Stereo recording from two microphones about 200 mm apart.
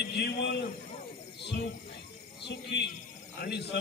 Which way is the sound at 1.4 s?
60° left (ahead or behind).